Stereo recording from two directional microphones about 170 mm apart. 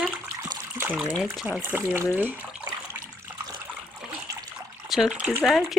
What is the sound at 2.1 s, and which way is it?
Water, 10° right (ahead or behind).